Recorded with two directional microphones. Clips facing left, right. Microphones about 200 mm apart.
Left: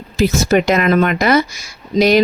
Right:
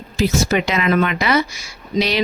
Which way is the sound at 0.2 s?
45° left (ahead or behind).